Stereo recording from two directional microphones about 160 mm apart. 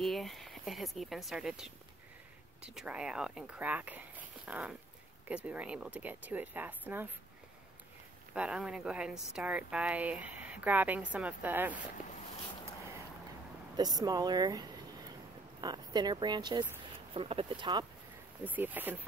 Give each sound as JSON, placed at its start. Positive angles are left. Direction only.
{"t": 0.0, "sound": "speech", "side_deg": 0}
{"t": 8.4, "sound": "speech", "side_deg": -5}
{"t": 13.7, "sound": "speech", "side_deg": -25}
{"t": 18.4, "sound": "speech", "side_deg": -10}